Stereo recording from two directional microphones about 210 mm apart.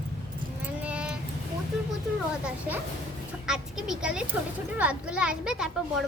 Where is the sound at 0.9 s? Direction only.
5° right (ahead or behind).